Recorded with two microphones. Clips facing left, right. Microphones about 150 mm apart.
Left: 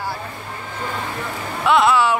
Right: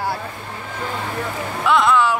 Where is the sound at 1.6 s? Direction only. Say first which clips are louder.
Left 1 dB; 5° left (ahead or behind).